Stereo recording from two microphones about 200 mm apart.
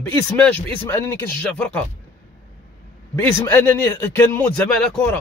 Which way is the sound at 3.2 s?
10° left (ahead or behind).